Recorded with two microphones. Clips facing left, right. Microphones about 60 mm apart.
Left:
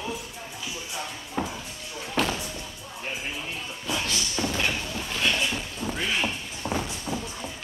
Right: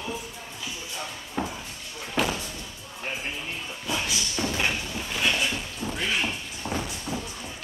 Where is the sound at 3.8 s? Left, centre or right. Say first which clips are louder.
Even; centre.